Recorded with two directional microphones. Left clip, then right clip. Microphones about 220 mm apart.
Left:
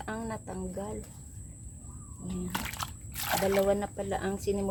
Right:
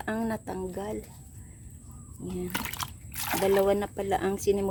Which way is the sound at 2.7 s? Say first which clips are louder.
Right 2 dB; centre (ahead or behind).